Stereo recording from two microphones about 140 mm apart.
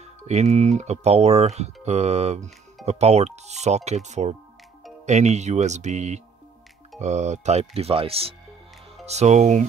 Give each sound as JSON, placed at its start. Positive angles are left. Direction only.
{"t": 0.0, "sound": "speech", "side_deg": -50}